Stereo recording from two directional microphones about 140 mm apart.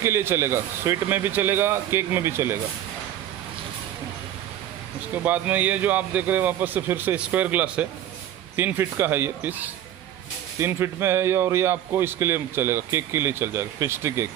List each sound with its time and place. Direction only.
0.0 s speech: 20° right (ahead or behind)
5.1 s speech: 10° right (ahead or behind)